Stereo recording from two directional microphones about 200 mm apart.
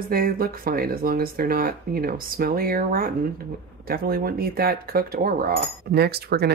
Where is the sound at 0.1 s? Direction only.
45° right (ahead or behind).